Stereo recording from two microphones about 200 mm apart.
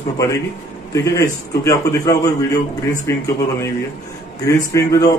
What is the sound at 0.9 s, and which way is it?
A man's voice, 15° left (ahead or behind).